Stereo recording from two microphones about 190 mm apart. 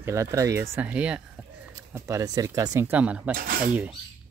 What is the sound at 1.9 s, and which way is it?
Speech, 15° right (ahead or behind).